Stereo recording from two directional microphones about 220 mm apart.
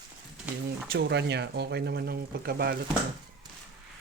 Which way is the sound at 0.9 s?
50° right (ahead or behind).